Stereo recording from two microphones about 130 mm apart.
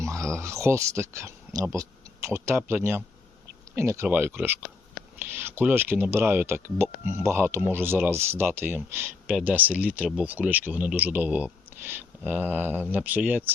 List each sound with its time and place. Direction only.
0.0 s speech: 25° right (ahead or behind)